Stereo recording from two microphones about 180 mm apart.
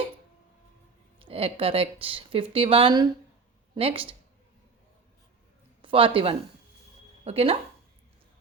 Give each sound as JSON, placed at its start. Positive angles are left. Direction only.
{"t": 1.2, "sound": "speech", "side_deg": -30}
{"t": 5.8, "sound": "speech", "side_deg": -30}